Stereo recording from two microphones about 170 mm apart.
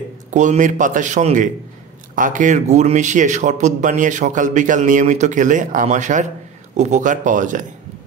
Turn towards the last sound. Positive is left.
turn(degrees=-50)  # may be behind; listen again after turning